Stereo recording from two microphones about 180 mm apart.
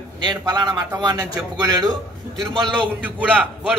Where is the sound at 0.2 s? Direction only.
25° right (ahead or behind).